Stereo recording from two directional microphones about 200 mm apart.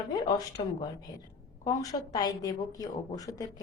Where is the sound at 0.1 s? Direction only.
20° left (ahead or behind).